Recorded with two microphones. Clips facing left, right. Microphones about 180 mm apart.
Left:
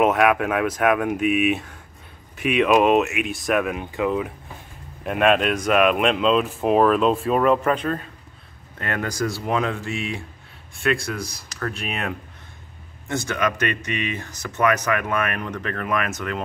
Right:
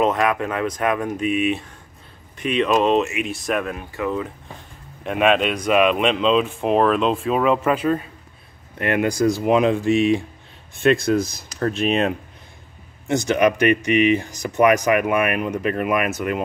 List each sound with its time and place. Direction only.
0.0 s speech: 10° left (ahead or behind)
3.7 s speech: 20° left (ahead or behind)
5.0 s speech: centre (ahead or behind)
8.7 s speech: 15° right (ahead or behind)